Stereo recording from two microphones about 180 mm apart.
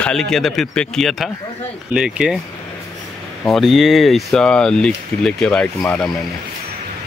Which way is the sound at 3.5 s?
Centre (ahead or behind).